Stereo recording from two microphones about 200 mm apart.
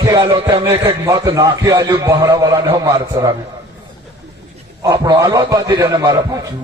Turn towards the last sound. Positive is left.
turn(degrees=-15)  # may be behind; listen again after turning